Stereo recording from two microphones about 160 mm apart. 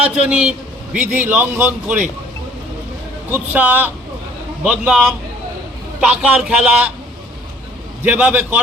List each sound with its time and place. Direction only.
0.0 s a man's voice: 10° right (ahead or behind)
3.2 s a man's voice: 10° right (ahead or behind)
6.1 s a man's voice: 5° right (ahead or behind)
8.0 s a man's voice: 10° right (ahead or behind)